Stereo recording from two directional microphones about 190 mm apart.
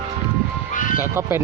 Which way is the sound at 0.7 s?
45° left (ahead or behind).